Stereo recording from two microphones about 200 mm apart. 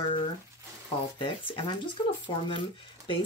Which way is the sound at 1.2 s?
25° left (ahead or behind).